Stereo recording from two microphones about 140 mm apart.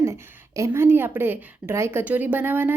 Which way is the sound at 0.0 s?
20° right (ahead or behind).